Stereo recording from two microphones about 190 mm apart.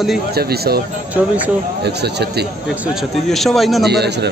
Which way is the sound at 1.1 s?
10° right (ahead or behind).